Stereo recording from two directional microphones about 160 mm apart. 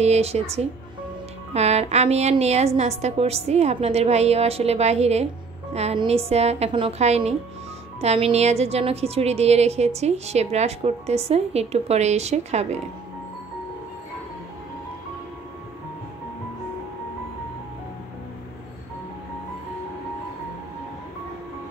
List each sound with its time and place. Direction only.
0.0 s a woman's voice: 40° right (ahead or behind)